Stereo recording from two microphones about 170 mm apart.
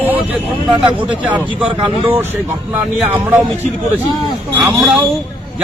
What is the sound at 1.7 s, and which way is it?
Speech, 30° right (ahead or behind).